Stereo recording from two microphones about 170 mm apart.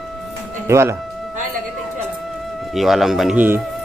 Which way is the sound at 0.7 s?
15° right (ahead or behind).